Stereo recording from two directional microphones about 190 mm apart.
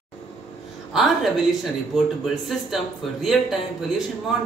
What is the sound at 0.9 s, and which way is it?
Speech, centre (ahead or behind).